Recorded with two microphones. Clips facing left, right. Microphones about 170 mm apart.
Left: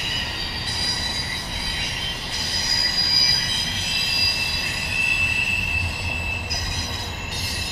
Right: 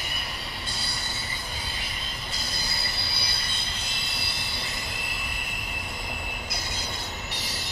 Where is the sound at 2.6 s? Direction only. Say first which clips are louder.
Left 3 dB; 70° left (ahead or behind).